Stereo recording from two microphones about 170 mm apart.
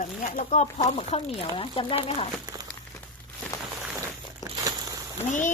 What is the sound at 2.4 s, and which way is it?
Crumpling, 25° right (ahead or behind).